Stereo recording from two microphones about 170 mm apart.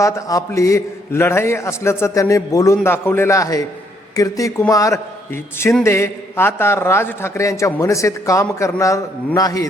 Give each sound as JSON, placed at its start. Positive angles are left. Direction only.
{"t": 0.0, "sound": "a man's voice", "side_deg": 20}